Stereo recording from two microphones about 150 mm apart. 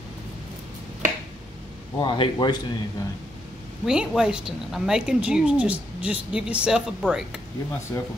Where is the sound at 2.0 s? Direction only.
30° left (ahead or behind).